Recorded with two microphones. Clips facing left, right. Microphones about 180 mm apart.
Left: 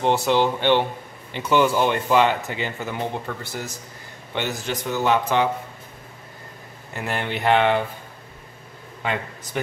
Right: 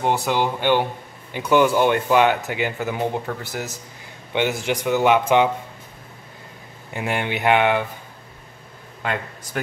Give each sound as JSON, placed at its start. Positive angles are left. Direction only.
{"t": 0.0, "sound": "a man's voice", "side_deg": -10}
{"t": 6.9, "sound": "speech", "side_deg": -15}
{"t": 9.0, "sound": "a man's voice", "side_deg": 0}